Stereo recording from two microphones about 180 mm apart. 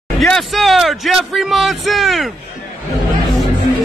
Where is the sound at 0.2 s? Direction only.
Centre (ahead or behind).